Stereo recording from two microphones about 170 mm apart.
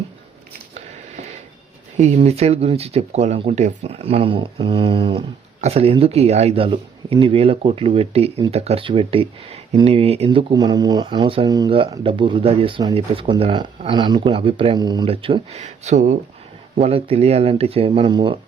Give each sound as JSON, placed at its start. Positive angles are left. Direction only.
{"t": 2.0, "sound": "speech", "side_deg": -40}
{"t": 15.6, "sound": "speech", "side_deg": -45}